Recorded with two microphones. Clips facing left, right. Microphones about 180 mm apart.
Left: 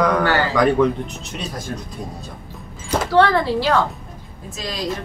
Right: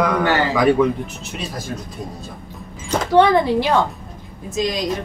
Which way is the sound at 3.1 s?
15° right (ahead or behind).